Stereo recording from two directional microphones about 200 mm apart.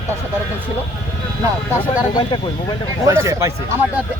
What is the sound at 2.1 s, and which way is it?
Speech, 20° left (ahead or behind).